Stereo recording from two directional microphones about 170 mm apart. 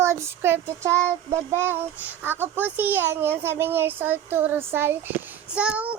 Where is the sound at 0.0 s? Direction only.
15° right (ahead or behind).